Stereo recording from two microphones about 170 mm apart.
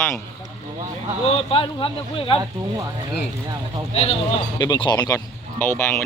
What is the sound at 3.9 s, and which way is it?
Speech, 40° left (ahead or behind).